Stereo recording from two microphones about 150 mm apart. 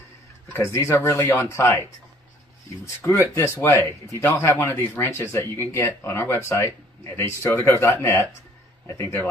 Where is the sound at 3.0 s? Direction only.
15° left (ahead or behind).